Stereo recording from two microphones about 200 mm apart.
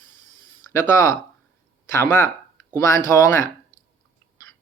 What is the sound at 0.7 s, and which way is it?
Speech, 15° left (ahead or behind).